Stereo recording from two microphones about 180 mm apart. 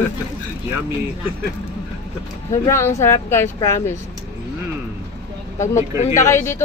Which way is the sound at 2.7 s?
15° left (ahead or behind).